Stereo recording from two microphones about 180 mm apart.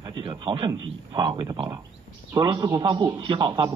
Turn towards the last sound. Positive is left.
turn(degrees=-25)  # may be behind; listen again after turning